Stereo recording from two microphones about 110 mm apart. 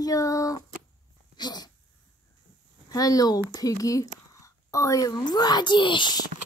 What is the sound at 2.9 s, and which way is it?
Speech, 35° left (ahead or behind).